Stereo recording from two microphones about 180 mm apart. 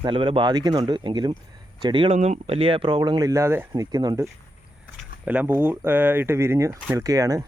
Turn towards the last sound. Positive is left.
turn(degrees=-20)  # may be behind; listen again after turning